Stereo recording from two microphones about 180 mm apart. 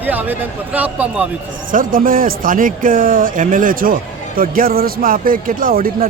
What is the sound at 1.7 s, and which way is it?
A man's voice, 50° right (ahead or behind).